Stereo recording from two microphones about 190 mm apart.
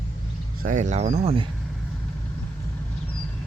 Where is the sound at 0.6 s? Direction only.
40° right (ahead or behind).